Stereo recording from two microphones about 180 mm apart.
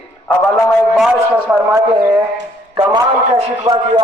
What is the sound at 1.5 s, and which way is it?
A man's voice, 15° right (ahead or behind).